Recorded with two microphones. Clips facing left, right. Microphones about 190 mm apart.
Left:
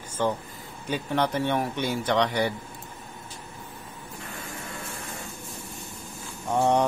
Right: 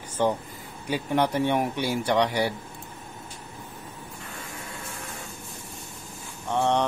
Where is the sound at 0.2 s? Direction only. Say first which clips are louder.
Right 2 dB; 15° right (ahead or behind).